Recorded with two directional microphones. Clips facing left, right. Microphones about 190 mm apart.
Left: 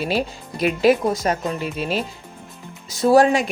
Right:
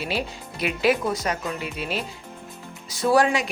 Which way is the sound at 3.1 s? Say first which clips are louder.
Left 5 dB; 45° left (ahead or behind).